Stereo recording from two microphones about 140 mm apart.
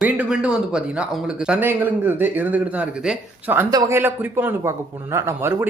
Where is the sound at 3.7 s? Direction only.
25° right (ahead or behind).